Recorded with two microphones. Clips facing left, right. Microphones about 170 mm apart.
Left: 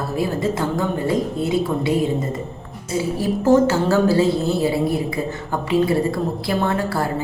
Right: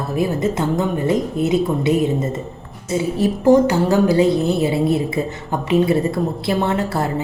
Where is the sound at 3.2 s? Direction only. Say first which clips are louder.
Right 2 dB; 15° right (ahead or behind).